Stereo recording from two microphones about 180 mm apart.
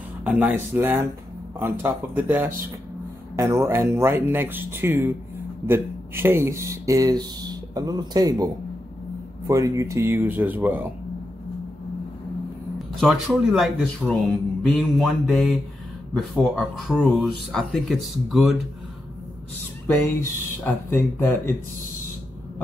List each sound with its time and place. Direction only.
0.2 s speech: 10° right (ahead or behind)
9.5 s speech: 15° right (ahead or behind)
12.7 s speech: centre (ahead or behind)
20.6 s speech: 10° left (ahead or behind)